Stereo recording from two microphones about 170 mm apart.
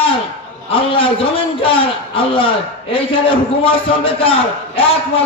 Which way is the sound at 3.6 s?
30° left (ahead or behind).